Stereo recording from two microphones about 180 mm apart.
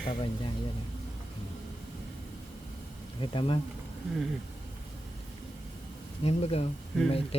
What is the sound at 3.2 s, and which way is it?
Speech, 30° left (ahead or behind).